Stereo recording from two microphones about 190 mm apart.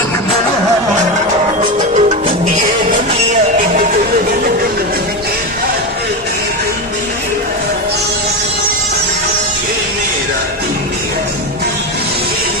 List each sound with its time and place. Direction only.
2.0 s music: 35° right (ahead or behind)